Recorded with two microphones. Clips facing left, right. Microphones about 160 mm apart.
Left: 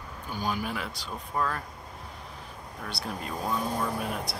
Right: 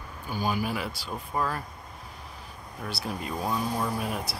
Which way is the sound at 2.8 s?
5° right (ahead or behind).